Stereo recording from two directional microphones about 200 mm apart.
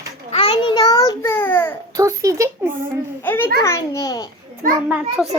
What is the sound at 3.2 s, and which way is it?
A child's voice, 10° left (ahead or behind).